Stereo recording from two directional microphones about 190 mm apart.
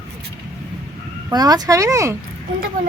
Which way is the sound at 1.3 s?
20° right (ahead or behind).